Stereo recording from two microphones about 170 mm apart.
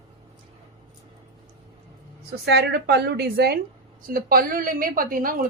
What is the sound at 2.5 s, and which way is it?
A woman's voice, 80° right.